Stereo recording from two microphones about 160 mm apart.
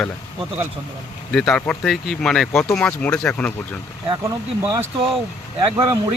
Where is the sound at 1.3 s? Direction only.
5° left (ahead or behind).